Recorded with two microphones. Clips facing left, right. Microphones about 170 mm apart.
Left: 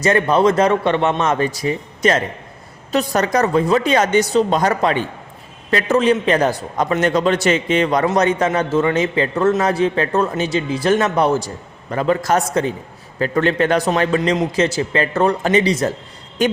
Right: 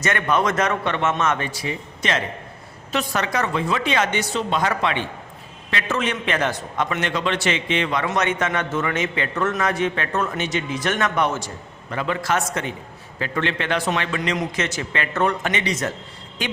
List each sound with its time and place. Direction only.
0.0 s a man's voice: 30° left (ahead or behind)